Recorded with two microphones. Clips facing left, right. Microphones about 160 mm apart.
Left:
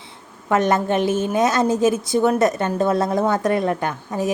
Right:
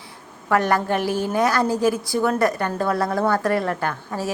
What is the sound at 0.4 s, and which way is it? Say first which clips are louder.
A woman's voice: left 2 dB; 20° left (ahead or behind).